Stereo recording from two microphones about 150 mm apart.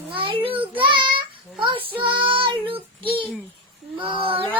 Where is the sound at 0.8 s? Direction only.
35° right (ahead or behind).